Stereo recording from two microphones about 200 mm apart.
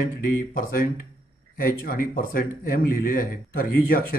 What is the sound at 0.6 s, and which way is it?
Speech, 45° left (ahead or behind).